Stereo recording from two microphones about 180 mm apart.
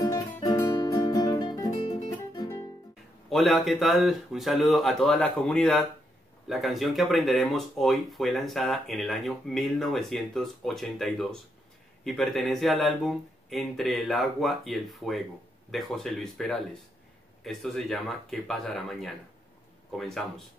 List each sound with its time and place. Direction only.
0.0 s music: 20° left (ahead or behind)
3.3 s speech: centre (ahead or behind)